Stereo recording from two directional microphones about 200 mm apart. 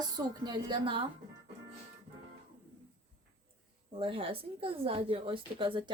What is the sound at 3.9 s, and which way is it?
Speech, 25° right (ahead or behind).